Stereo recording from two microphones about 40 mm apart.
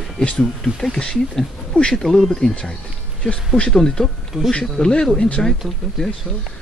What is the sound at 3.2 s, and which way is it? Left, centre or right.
Speech, left.